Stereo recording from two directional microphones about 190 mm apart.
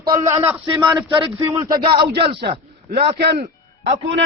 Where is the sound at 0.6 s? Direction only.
25° right (ahead or behind).